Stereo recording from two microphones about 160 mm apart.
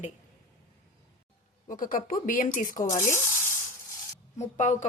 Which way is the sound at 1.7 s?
60° left (ahead or behind).